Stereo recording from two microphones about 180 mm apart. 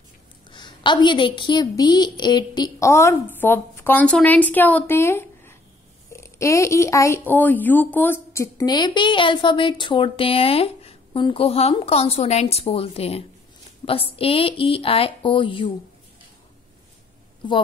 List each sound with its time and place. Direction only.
0.5 s a woman's voice: 25° left (ahead or behind)
17.4 s speech: 25° left (ahead or behind)